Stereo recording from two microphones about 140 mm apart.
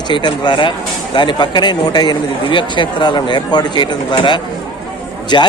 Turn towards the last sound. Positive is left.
turn(degrees=35)  # may be behind; listen again after turning